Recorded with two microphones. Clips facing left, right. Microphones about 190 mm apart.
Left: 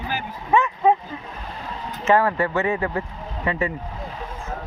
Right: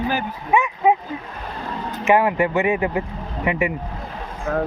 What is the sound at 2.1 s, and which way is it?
Speech, 15° right (ahead or behind).